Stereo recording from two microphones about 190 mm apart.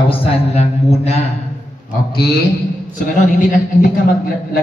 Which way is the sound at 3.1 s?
45° left (ahead or behind).